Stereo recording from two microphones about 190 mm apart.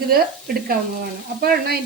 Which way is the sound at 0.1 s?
50° right (ahead or behind).